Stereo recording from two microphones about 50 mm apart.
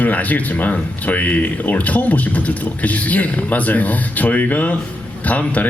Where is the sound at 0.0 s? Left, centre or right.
Left.